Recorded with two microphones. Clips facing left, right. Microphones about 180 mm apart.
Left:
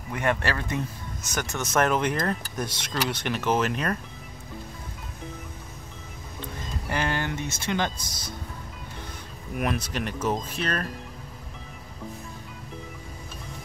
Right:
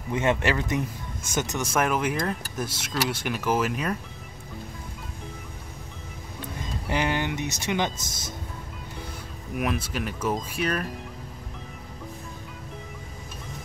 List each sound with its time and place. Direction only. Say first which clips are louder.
0.1 s speech: right 3 dB; 20° right (ahead or behind); by 4.0 s 5° right (ahead or behind)
6.9 s speech: right 2 dB; 15° right (ahead or behind)
9.6 s speech: even; 5° right (ahead or behind)